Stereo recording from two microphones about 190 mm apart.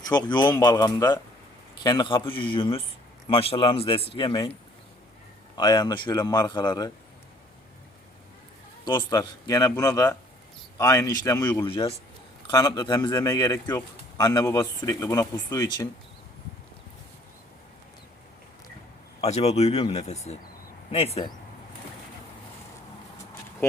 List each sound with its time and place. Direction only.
0.1 s a man's voice: 20° left (ahead or behind)
5.5 s a man's voice: 20° left (ahead or behind)
8.8 s a man's voice: 25° left (ahead or behind)
19.2 s speech: 35° left (ahead or behind)